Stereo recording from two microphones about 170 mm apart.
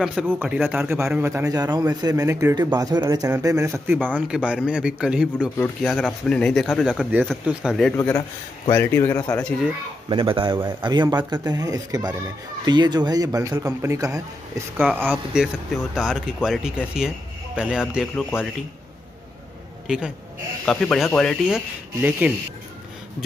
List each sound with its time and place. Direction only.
0.0 s a man's voice: 5° right (ahead or behind)
8.6 s a man's voice: 15° left (ahead or behind)
10.0 s speech: 30° right (ahead or behind); by 18.2 s 5° right (ahead or behind)
19.9 s speech: 5° right (ahead or behind)